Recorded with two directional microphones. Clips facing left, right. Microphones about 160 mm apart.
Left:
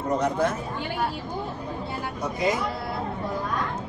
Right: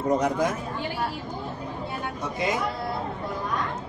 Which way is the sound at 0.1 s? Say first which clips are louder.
Even; 10° right (ahead or behind).